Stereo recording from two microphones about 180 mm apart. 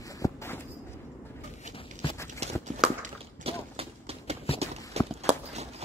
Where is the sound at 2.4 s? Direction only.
35° right (ahead or behind).